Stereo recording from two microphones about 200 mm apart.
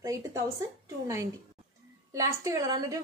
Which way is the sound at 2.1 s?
15° right (ahead or behind).